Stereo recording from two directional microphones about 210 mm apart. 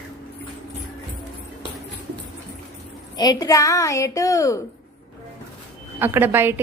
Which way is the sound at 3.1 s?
20° left (ahead or behind).